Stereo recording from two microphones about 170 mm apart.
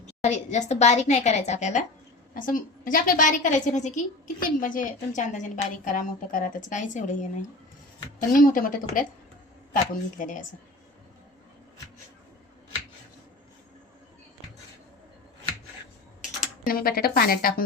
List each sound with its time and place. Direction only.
0.0 s a woman's voice: 40° left (ahead or behind)
2.3 s a woman's voice: 55° left (ahead or behind)
10.2 s a woman's voice: 50° left (ahead or behind)
16.6 s speech: 60° left (ahead or behind)